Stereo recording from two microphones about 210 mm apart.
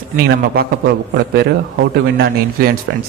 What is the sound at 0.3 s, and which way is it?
A man's voice, 45° right (ahead or behind).